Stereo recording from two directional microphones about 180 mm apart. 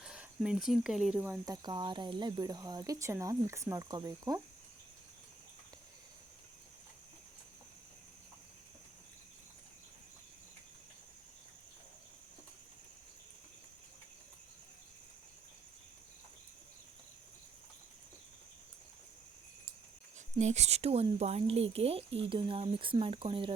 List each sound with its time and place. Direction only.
0.0 s speech: 5° right (ahead or behind)
1.6 s speech: 25° right (ahead or behind)
20.4 s speech: 40° right (ahead or behind)